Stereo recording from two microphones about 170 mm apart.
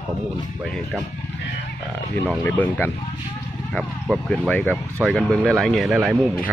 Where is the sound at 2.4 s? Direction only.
10° left (ahead or behind).